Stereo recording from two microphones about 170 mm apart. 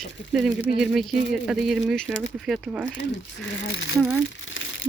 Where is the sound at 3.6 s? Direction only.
90° left.